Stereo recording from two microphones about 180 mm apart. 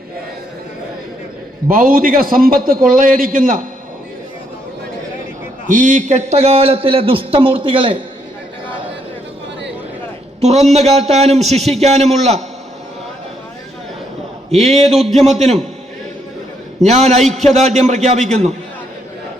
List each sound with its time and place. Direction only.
1.7 s a man's voice: 50° right (ahead or behind)
5.6 s a man's voice: 45° right (ahead or behind); by 8.0 s 30° right (ahead or behind)
10.4 s a man's voice: 40° right (ahead or behind)
14.5 s a man's voice: 35° right (ahead or behind)
14.9 s a man's voice: centre (ahead or behind)
15.2 s a man's voice: 40° right (ahead or behind)
16.8 s a man's voice: 40° right (ahead or behind)